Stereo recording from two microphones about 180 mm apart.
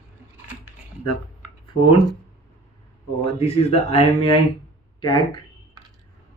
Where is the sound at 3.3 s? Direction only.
35° left (ahead or behind).